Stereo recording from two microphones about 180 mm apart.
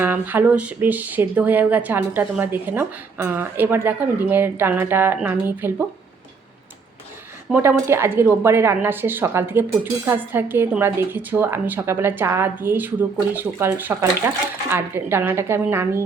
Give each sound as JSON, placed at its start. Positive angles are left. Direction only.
{"t": 0.0, "sound": "a woman's voice", "side_deg": -10}
{"t": 7.5, "sound": "a woman's voice", "side_deg": -10}